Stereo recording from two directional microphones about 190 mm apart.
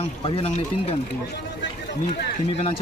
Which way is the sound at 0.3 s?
30° left (ahead or behind).